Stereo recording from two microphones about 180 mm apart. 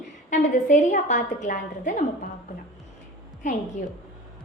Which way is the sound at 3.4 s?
45° left (ahead or behind).